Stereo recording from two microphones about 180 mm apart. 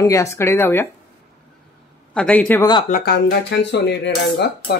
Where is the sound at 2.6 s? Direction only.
25° left (ahead or behind).